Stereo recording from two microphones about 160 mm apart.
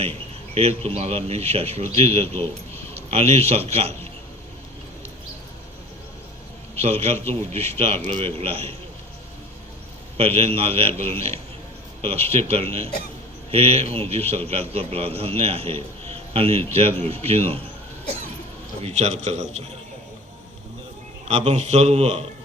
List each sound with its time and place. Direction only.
0.0 s a man's voice: 40° right (ahead or behind)
6.8 s speech: 40° right (ahead or behind)
10.2 s speech: 35° right (ahead or behind)
18.8 s a man's voice: 45° right (ahead or behind)
21.2 s a man's voice: 45° right (ahead or behind)